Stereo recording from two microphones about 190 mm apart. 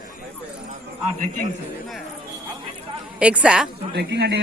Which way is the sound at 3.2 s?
5° right (ahead or behind).